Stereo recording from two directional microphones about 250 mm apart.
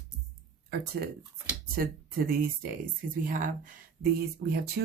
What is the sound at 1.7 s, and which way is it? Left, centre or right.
Speech, right.